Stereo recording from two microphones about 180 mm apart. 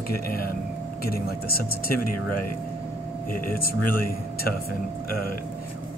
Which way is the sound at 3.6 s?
55° left (ahead or behind).